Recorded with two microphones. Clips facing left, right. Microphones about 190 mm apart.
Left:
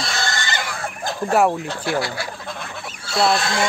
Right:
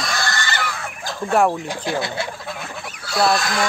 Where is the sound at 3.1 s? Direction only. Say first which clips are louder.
Even; 25° left (ahead or behind).